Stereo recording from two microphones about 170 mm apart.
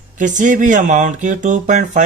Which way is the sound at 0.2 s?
50° right (ahead or behind).